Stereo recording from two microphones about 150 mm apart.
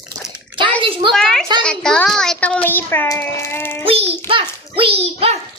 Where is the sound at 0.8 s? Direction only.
35° right (ahead or behind).